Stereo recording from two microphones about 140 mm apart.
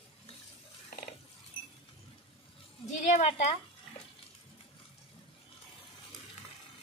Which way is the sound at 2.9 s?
60° left (ahead or behind).